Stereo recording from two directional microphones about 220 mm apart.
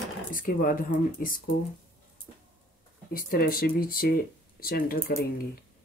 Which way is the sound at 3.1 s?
40° left (ahead or behind).